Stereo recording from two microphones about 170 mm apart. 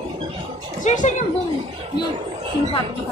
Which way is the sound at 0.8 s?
45° left (ahead or behind).